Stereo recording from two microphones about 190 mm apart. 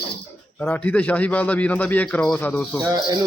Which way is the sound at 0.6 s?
10° left (ahead or behind).